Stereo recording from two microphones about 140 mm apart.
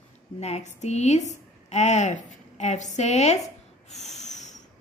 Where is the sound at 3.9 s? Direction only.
55° left (ahead or behind).